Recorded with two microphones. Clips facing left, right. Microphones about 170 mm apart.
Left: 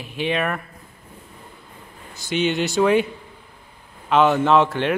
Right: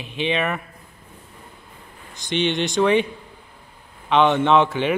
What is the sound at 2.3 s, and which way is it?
Speech, 5° left (ahead or behind).